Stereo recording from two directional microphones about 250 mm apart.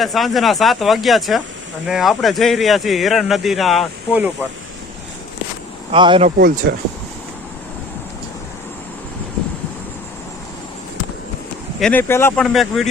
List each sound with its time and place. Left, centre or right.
0.0 s speech: centre
5.9 s speech: centre
6.6 s speech: right
11.8 s speech: centre